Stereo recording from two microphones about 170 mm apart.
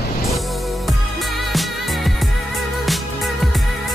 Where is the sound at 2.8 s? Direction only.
Centre (ahead or behind).